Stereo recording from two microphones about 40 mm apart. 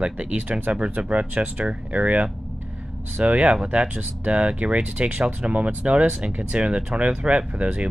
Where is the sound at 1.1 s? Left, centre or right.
Right.